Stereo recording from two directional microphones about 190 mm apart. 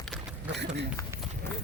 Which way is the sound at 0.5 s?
65° right (ahead or behind).